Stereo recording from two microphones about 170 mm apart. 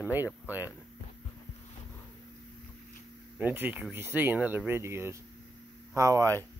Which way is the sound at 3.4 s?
10° right (ahead or behind).